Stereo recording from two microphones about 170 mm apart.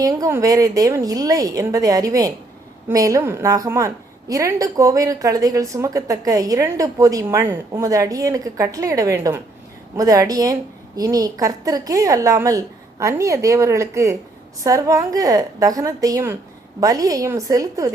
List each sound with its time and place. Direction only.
0.0 s a woman's voice: 20° right (ahead or behind)